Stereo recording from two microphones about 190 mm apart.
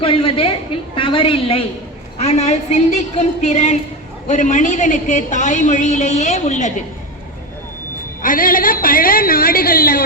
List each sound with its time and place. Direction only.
0.0 s a woman's voice: 30° left (ahead or behind)
8.2 s a woman's voice: 45° left (ahead or behind)